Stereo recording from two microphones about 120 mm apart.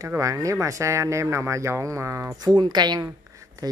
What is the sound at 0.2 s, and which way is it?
A woman's voice, 30° right (ahead or behind).